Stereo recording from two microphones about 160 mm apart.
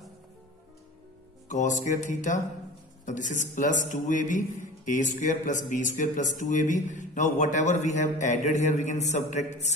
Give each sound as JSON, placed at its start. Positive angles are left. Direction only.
{"t": 1.5, "sound": "speech", "side_deg": 50}